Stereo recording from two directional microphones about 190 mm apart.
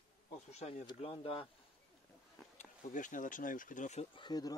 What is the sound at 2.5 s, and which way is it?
Speech, 40° left (ahead or behind).